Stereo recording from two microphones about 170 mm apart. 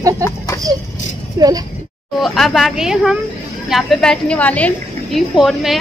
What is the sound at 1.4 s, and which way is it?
Speech, 20° right (ahead or behind).